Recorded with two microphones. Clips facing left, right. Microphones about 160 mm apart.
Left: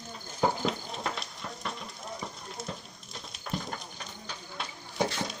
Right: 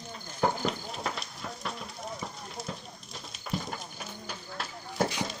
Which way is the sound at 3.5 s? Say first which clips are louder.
Right 1 dB; 5° right (ahead or behind).